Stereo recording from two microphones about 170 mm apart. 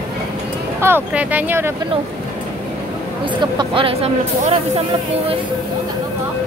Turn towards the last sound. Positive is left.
turn(degrees=-35)  # may be behind; listen again after turning